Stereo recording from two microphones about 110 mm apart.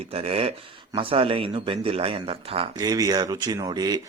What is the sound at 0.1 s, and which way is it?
Speech, 60° right (ahead or behind).